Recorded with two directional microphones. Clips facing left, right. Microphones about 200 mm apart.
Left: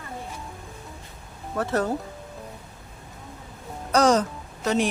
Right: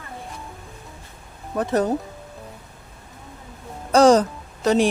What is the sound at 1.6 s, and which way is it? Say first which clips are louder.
Speech: right 4 dB; 20° right (ahead or behind).